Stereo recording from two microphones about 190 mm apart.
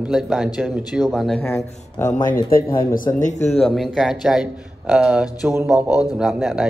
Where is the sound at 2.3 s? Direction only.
50° left (ahead or behind).